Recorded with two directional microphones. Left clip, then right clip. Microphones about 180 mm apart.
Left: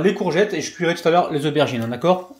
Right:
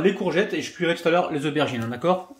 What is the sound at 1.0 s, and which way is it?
Speech, 15° left (ahead or behind).